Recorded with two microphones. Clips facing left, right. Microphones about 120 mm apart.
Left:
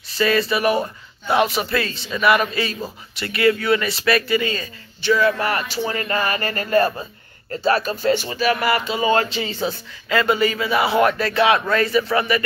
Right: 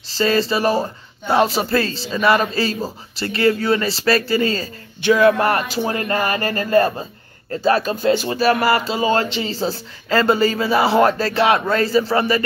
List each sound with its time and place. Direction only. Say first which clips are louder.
0.1 s speech: right 1 dB; 30° right (ahead or behind)
5.0 s speech: right 4 dB; 55° right (ahead or behind); by 12.4 s 30° right (ahead or behind)